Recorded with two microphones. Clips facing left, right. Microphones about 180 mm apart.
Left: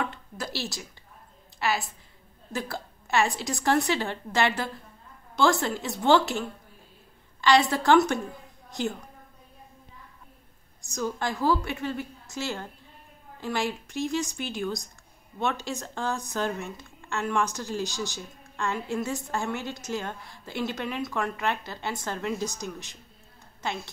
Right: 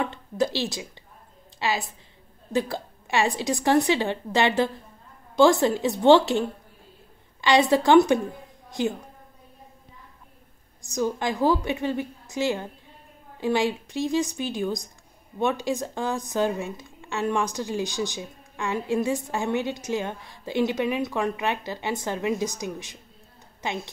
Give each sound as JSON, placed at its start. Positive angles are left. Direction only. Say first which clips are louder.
{"t": 0.0, "sound": "a sound", "louder": "right 7 dB", "side_deg": -20}
{"t": 1.6, "sound": "a woman's voice", "louder": "right 1 dB", "side_deg": -20}
{"t": 7.4, "sound": "a woman's voice", "louder": "right 2 dB", "side_deg": -15}
{"t": 11.0, "sound": "a woman's voice", "louder": "right 5 dB", "side_deg": -20}